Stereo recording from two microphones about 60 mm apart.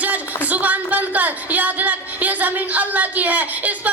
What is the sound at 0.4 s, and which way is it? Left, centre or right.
A woman's voice, right.